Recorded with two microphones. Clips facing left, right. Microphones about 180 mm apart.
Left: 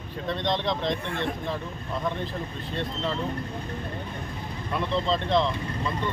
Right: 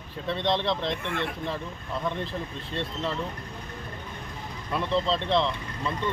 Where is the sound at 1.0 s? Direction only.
35° left (ahead or behind).